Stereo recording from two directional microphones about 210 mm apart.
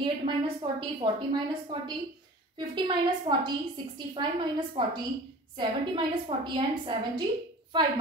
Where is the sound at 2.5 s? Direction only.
20° right (ahead or behind).